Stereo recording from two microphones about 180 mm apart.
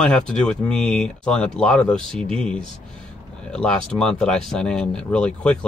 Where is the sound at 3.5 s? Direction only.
5° left (ahead or behind).